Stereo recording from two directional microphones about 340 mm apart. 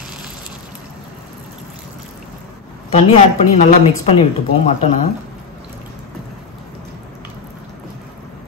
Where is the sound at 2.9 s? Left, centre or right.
Centre.